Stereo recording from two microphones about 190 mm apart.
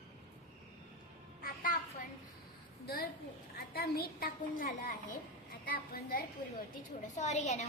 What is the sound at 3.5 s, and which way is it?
A child's voice, 55° left (ahead or behind).